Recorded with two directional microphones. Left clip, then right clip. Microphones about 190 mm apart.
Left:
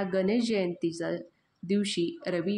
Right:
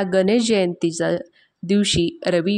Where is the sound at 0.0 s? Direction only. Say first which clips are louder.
Right 10 dB; 45° right (ahead or behind).